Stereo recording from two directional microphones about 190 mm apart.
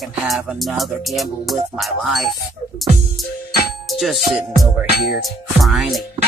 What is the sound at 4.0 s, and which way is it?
Speech, centre (ahead or behind).